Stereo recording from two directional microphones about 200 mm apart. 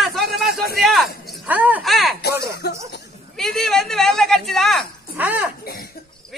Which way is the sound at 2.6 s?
55° left (ahead or behind).